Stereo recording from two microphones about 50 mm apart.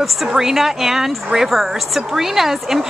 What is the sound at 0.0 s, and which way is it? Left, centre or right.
Speech, centre.